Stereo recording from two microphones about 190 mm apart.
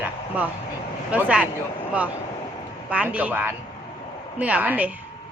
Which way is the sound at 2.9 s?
5° right (ahead or behind).